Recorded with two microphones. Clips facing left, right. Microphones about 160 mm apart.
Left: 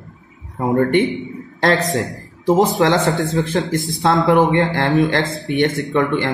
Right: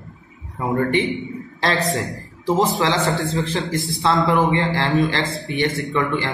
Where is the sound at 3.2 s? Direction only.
55° left (ahead or behind).